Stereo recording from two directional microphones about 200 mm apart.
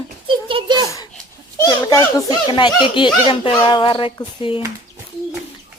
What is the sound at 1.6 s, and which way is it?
A child's voice, 20° left (ahead or behind).